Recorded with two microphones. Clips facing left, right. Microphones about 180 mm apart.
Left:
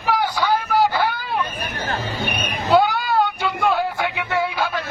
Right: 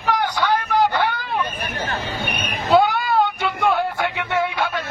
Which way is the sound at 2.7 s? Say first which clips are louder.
Right 1 dB; centre (ahead or behind).